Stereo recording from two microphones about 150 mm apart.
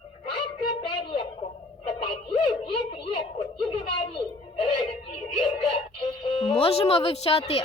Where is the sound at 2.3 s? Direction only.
40° left (ahead or behind).